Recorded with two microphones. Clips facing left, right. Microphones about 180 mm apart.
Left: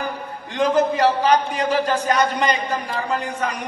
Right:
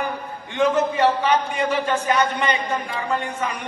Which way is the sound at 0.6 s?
35° left (ahead or behind).